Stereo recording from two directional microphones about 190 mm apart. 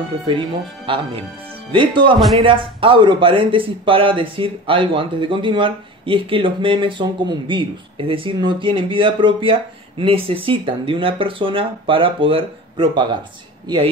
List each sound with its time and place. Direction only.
0.3 s speech: 25° right (ahead or behind)